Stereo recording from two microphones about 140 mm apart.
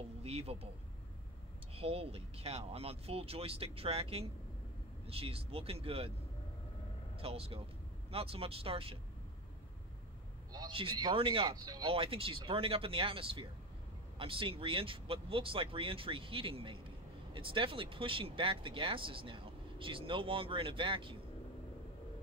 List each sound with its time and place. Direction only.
0.2 s speech: 45° right (ahead or behind)
1.8 s speech: 45° right (ahead or behind)
7.2 s speech: 45° right (ahead or behind)
10.7 s speech: 35° right (ahead or behind)
11.9 s speech: 40° right (ahead or behind)